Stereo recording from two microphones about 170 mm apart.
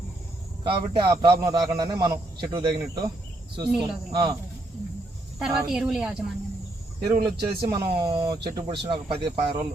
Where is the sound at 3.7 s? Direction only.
5° right (ahead or behind).